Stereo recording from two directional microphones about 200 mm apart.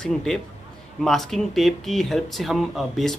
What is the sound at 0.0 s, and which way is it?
Speech, 5° left (ahead or behind).